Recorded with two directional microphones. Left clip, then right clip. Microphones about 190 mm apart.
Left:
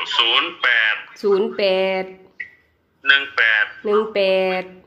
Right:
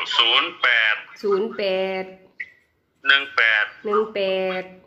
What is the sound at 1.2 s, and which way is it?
Speech, 20° left (ahead or behind).